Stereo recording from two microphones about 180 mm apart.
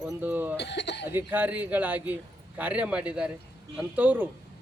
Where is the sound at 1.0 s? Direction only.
10° right (ahead or behind).